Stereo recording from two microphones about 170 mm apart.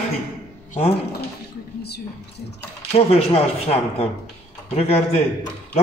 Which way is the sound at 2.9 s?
35° left (ahead or behind).